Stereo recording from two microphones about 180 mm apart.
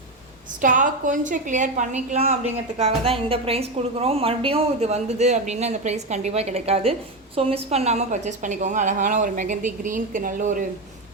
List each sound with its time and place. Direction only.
0.6 s a woman's voice: 45° right (ahead or behind)